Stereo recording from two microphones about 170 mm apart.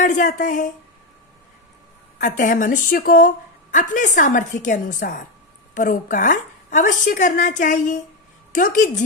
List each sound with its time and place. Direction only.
0.0 s a woman's voice: 50° left (ahead or behind)
2.2 s a woman's voice: 50° left (ahead or behind)